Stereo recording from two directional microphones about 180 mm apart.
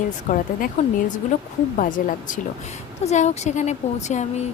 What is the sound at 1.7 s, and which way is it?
A woman's voice, 45° left (ahead or behind).